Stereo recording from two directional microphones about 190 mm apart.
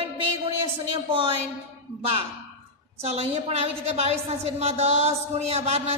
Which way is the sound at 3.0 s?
35° right (ahead or behind).